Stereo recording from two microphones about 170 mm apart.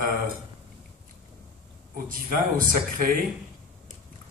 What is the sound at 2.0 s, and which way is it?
Speech, 55° right (ahead or behind).